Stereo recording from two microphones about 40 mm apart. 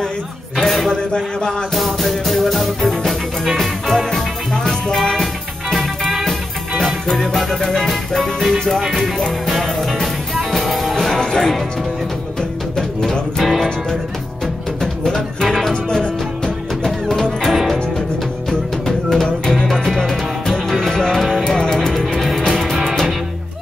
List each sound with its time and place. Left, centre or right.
0.6 s a sound: centre
1.7 s music: centre
7.9 s music: centre
11.1 s music: centre
14.8 s music: centre
15.4 s music: centre
15.7 s music: centre